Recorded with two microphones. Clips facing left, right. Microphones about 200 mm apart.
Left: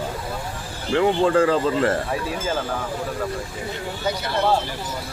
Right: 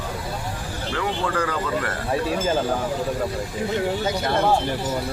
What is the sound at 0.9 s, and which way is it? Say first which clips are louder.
Speech: left 8 dB; 25° left (ahead or behind).